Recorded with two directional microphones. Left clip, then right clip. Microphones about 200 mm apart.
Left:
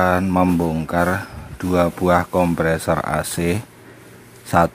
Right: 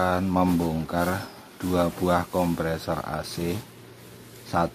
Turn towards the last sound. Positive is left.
turn(degrees=20)  # may be behind; listen again after turning